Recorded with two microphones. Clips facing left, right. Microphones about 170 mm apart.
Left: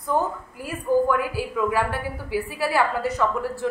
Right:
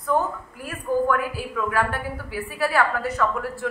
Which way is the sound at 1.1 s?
15° left (ahead or behind).